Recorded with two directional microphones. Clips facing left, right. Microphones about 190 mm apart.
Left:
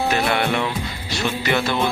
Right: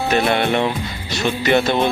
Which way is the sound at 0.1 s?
25° right (ahead or behind).